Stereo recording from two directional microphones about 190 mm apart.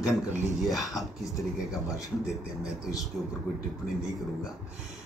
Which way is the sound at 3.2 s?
Centre (ahead or behind).